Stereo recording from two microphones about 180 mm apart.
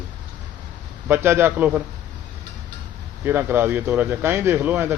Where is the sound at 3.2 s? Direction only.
10° right (ahead or behind).